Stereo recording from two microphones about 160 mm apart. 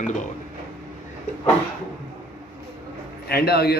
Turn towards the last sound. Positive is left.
turn(degrees=80)